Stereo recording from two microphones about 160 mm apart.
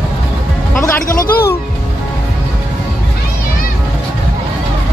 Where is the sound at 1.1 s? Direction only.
60° left (ahead or behind).